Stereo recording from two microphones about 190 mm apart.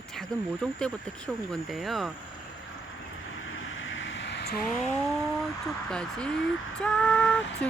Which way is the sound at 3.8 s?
85° left.